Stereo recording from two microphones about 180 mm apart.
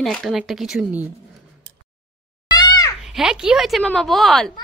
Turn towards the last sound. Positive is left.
turn(degrees=0)  # may be behind; listen again after turning